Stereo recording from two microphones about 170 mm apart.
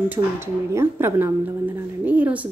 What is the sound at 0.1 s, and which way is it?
Speech, 15° right (ahead or behind).